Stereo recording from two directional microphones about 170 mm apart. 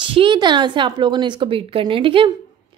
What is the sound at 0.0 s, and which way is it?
A woman's voice, 30° right (ahead or behind).